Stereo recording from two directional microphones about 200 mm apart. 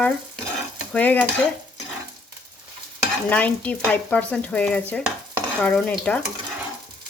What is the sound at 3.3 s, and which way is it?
Stir, 5° left (ahead or behind).